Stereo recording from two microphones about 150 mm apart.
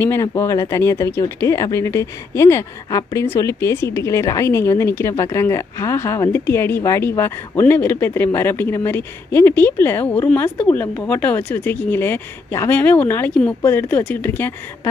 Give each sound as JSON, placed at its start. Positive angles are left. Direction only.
{"t": 0.0, "sound": "speech", "side_deg": 20}